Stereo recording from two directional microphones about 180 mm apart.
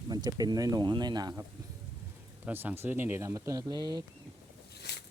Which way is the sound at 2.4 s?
10° right (ahead or behind).